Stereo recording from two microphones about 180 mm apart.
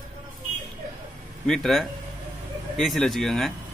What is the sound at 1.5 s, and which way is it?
Speech, centre (ahead or behind).